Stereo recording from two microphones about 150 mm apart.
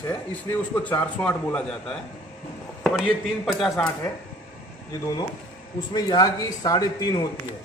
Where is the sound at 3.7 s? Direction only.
20° left (ahead or behind).